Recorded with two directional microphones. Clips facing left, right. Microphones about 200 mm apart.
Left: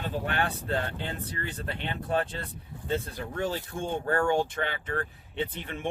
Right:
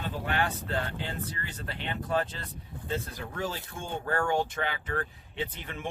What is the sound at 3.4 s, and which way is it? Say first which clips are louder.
Speech: left 4 dB; 30° left (ahead or behind).